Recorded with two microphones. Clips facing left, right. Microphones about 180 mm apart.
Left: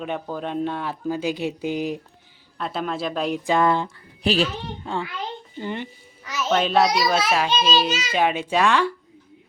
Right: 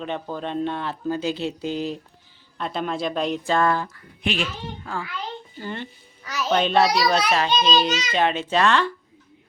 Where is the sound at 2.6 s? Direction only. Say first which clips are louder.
Even; centre (ahead or behind).